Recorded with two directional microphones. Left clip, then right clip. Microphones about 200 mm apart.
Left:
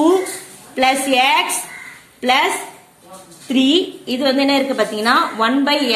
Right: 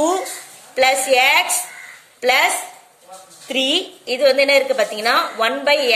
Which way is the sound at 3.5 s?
30° right (ahead or behind).